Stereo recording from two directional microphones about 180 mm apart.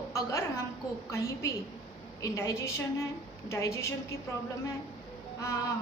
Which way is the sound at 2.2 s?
15° left (ahead or behind).